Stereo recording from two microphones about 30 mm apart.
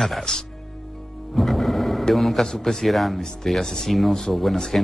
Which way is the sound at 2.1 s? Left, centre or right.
Centre.